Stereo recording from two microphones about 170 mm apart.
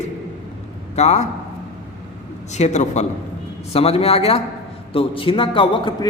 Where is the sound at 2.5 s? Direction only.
40° left (ahead or behind).